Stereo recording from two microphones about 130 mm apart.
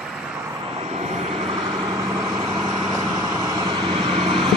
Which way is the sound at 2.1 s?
30° right (ahead or behind).